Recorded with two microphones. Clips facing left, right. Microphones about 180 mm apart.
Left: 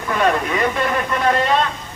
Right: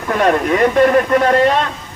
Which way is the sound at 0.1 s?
50° right (ahead or behind).